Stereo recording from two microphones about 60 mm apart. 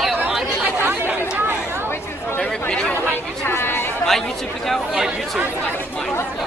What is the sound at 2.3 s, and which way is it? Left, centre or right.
Chatter, left.